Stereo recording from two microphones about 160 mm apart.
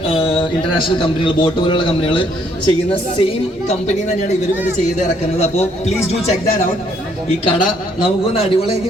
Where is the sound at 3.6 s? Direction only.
45° left (ahead or behind).